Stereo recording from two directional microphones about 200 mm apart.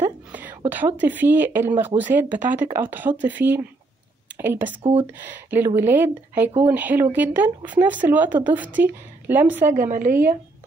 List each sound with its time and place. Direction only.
0.0 s a sound: 10° right (ahead or behind)
0.7 s speech: 10° right (ahead or behind)
9.8 s a woman's voice: 40° right (ahead or behind)